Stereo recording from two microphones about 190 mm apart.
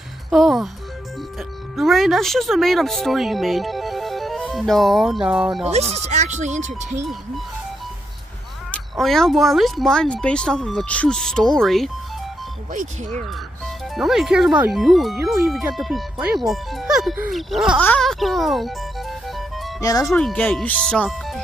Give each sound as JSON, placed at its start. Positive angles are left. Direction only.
{"t": 0.3, "sound": "speech", "side_deg": 0}
{"t": 1.8, "sound": "speech", "side_deg": 0}
{"t": 5.7, "sound": "speech", "side_deg": -35}
{"t": 8.7, "sound": "speech", "side_deg": 0}
{"t": 13.9, "sound": "speech", "side_deg": 0}
{"t": 17.8, "sound": "music", "side_deg": 0}
{"t": 19.8, "sound": "speech", "side_deg": 20}
{"t": 20.2, "sound": "speech", "side_deg": 5}